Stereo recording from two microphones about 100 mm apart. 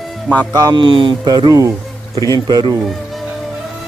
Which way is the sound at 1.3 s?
40° right (ahead or behind).